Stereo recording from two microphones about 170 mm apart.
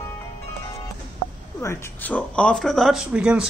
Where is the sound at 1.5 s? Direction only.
15° left (ahead or behind); by 3.5 s 5° right (ahead or behind).